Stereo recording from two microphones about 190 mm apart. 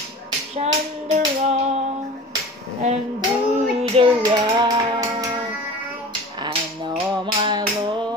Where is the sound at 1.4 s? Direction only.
35° right (ahead or behind).